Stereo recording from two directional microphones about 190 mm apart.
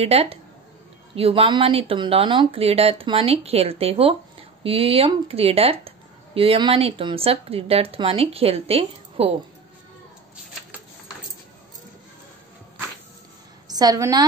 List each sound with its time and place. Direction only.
0.0 s speech: 30° right (ahead or behind)
13.7 s a woman's voice: 20° right (ahead or behind)